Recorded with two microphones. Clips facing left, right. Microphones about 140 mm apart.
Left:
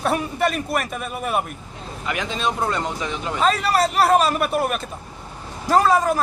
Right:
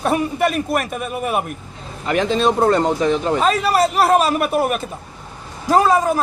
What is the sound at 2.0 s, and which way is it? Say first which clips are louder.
Speech: right 8 dB; 35° right (ahead or behind).